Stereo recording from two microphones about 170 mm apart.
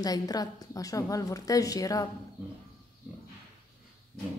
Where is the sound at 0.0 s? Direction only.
20° left (ahead or behind).